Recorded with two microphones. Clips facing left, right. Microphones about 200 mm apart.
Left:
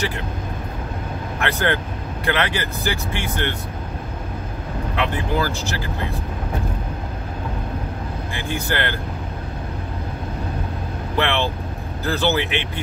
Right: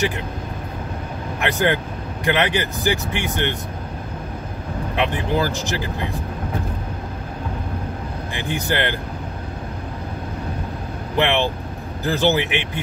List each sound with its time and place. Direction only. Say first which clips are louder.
1.4 s speech: right 2 dB; 15° right (ahead or behind)
4.9 s speech: right 2 dB; 15° right (ahead or behind)
8.4 s speech: right 2 dB; 15° right (ahead or behind)
11.1 s speech: right 2 dB; 15° right (ahead or behind)